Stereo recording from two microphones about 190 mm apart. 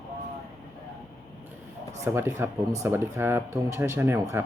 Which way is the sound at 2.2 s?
15° right (ahead or behind).